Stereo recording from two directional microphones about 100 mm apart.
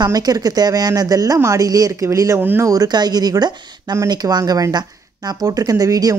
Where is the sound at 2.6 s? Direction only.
40° right (ahead or behind).